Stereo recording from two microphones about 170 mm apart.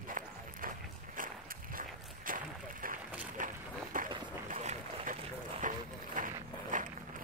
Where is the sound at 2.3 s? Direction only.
55° right (ahead or behind).